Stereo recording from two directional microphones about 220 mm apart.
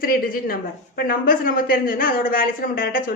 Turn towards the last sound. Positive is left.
turn(degrees=40)  # may be behind; listen again after turning